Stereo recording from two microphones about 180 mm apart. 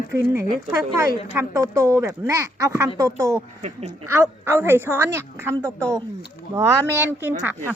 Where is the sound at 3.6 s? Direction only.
35° right (ahead or behind).